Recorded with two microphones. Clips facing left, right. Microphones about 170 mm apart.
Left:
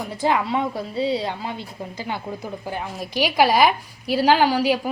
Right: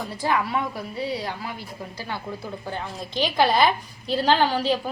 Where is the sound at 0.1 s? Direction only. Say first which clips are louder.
Left 4 dB; 20° left (ahead or behind).